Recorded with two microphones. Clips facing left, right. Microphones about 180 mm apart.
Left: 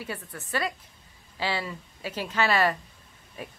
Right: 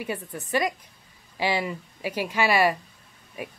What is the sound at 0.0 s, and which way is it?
Speech, 15° right (ahead or behind).